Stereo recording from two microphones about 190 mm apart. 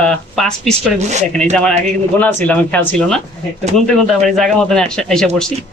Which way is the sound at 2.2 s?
10° left (ahead or behind).